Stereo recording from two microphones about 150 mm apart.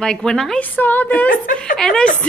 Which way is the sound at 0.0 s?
5° left (ahead or behind).